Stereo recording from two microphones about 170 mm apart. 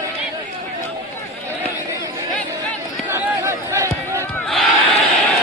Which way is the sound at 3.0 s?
15° right (ahead or behind).